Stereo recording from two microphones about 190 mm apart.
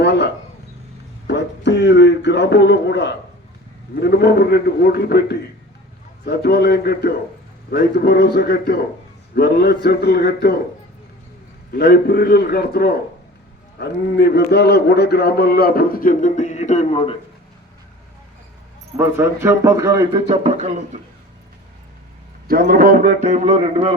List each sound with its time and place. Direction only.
0.0 s a sound: 65° left (ahead or behind)
1.3 s a sound: 65° left (ahead or behind)
4.0 s a man's voice: 60° left (ahead or behind)
11.7 s a man's voice: 55° left (ahead or behind); by 17.2 s 30° left (ahead or behind)
18.9 s a man's voice: 15° right (ahead or behind); by 20.7 s 35° right (ahead or behind)
22.4 s a man's voice: 50° right (ahead or behind); by 23.9 s 30° right (ahead or behind)